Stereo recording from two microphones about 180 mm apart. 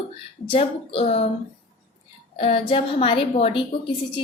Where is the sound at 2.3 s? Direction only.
30° left (ahead or behind).